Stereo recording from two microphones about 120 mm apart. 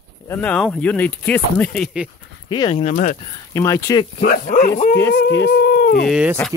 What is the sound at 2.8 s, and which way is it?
Speech, 90° left.